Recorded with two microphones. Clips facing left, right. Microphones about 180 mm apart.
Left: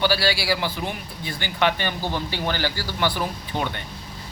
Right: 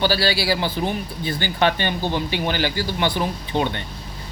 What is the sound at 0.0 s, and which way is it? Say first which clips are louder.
Speech: right 2 dB; 30° right (ahead or behind).